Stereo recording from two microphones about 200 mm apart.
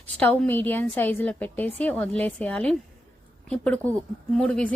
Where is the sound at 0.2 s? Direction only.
10° left (ahead or behind).